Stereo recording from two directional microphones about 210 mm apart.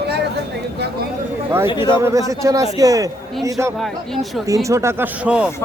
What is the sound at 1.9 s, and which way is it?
Speech, 15° right (ahead or behind).